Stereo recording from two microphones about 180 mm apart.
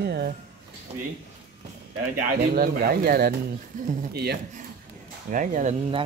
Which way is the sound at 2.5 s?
55° right (ahead or behind).